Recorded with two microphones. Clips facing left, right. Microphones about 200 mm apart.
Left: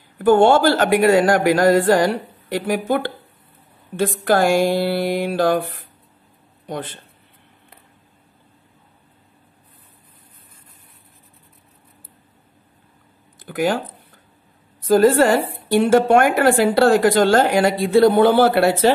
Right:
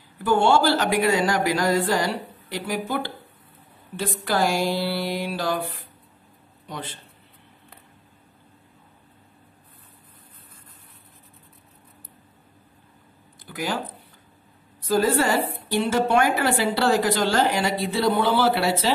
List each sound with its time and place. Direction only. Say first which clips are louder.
0.2 s a woman's voice: left 6 dB; 50° left (ahead or behind)
13.4 s a woman's voice: left 8 dB; 50° left (ahead or behind)